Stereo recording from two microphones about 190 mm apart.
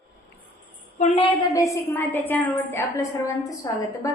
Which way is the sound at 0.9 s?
35° left (ahead or behind).